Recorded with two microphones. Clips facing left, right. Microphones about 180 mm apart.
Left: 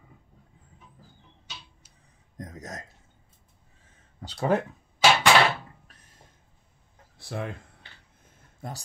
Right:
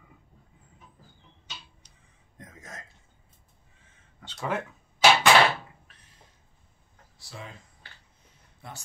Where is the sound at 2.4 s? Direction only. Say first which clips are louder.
Left 7 dB; 40° left (ahead or behind).